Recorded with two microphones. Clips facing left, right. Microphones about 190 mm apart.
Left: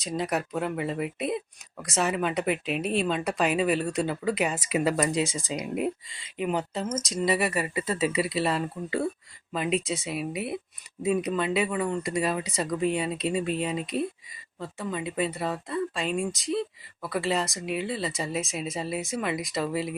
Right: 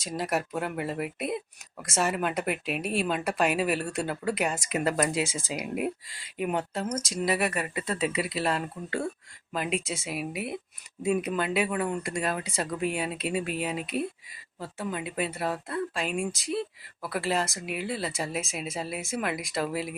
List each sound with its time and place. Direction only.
0.0 s speech: centre (ahead or behind)